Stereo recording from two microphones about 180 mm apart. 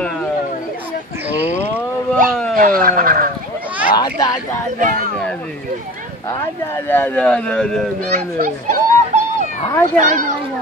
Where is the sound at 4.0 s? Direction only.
20° left (ahead or behind).